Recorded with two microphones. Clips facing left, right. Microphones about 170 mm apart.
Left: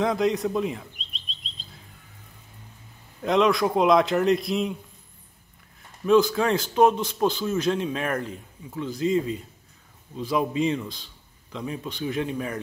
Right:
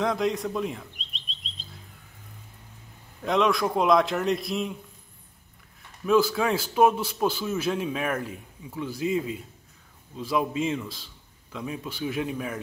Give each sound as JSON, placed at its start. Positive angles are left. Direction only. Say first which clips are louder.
{"t": 0.0, "sound": "chirp", "louder": "left 3 dB", "side_deg": 0}
{"t": 3.2, "sound": "a man's voice", "louder": "left 3 dB", "side_deg": 0}
{"t": 6.0, "sound": "a man's voice", "louder": "left 3 dB", "side_deg": -5}